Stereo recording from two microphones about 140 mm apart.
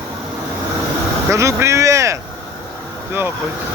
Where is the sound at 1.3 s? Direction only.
20° right (ahead or behind).